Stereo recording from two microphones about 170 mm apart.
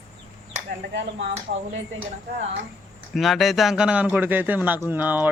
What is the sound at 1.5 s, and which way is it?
Speech, 65° right (ahead or behind).